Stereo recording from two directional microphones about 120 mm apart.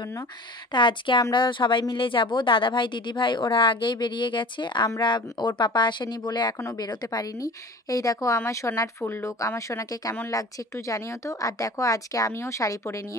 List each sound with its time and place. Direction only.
0.7 s a woman's voice: 40° left (ahead or behind); by 13.0 s 25° left (ahead or behind)